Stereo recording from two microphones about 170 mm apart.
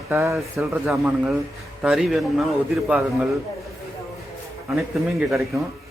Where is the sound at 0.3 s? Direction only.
5° right (ahead or behind).